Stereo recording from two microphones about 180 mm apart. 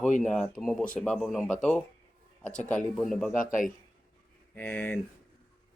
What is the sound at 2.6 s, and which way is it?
Speech, 5° left (ahead or behind).